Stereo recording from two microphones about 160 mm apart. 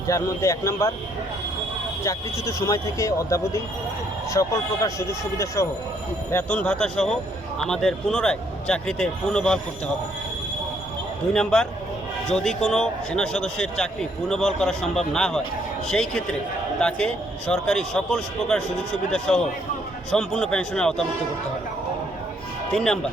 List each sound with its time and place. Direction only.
0.1 s speech: 20° left (ahead or behind)
2.0 s a man's voice: 20° left (ahead or behind)
11.3 s a man's voice: 5° left (ahead or behind)
22.7 s a man's voice: 5° left (ahead or behind)